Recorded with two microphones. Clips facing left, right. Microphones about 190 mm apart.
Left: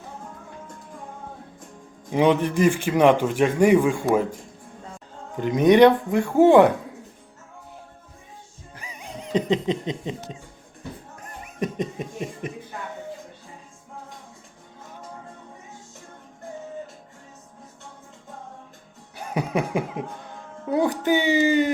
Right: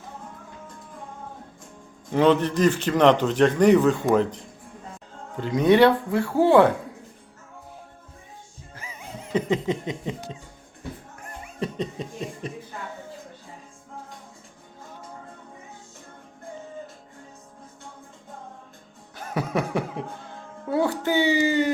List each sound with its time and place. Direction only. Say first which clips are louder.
2.1 s a man's voice: even; 15° left (ahead or behind)
5.4 s a man's voice: left 3 dB; 20° left (ahead or behind)
8.7 s a sound: left 1 dB; 15° left (ahead or behind)
11.2 s music: left 3 dB; 15° left (ahead or behind)
19.1 s a sound: left 1 dB; 15° left (ahead or behind)
20.7 s a man's voice: left 2 dB; 20° left (ahead or behind)